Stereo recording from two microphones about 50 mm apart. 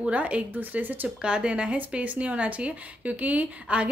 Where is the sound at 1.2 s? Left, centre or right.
Right.